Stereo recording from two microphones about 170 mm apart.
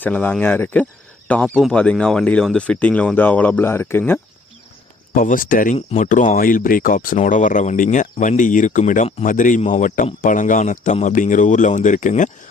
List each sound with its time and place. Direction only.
0.0 s speech: 10° left (ahead or behind)
5.1 s speech: 55° left (ahead or behind)